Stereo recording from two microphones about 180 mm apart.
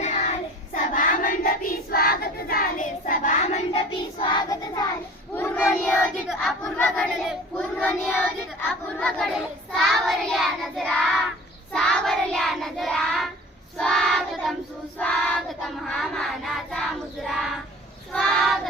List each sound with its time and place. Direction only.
0.0 s child singing: 40° left (ahead or behind); by 6.1 s 10° left (ahead or behind)
6.2 s battle cry: 5° left (ahead or behind)
7.3 s child singing: 5° left (ahead or behind)